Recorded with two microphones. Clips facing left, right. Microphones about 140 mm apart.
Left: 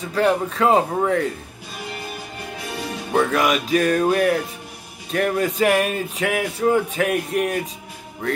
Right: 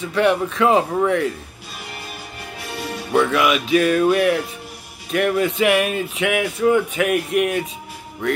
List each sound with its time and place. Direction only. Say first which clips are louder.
0.0 s speech: right 1 dB; 35° left (ahead or behind)
3.1 s speech: right 2 dB; 40° left (ahead or behind)